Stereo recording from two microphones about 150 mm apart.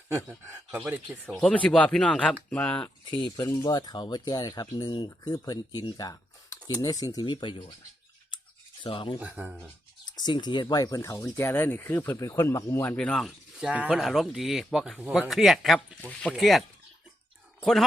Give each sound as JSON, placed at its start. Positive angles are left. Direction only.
{"t": 0.3, "sound": "speech", "side_deg": -10}
{"t": 1.4, "sound": "speech", "side_deg": 5}
{"t": 3.1, "sound": "speech", "side_deg": 35}
{"t": 3.3, "sound": "speech", "side_deg": 20}
{"t": 5.8, "sound": "computer keyboard", "side_deg": 25}
{"t": 6.8, "sound": "speech", "side_deg": 25}
{"t": 8.8, "sound": "speech", "side_deg": 35}
{"t": 9.2, "sound": "speech", "side_deg": -5}
{"t": 10.1, "sound": "speech", "side_deg": 30}